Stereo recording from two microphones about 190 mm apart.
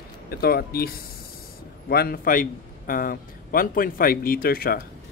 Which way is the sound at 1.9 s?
50° left (ahead or behind).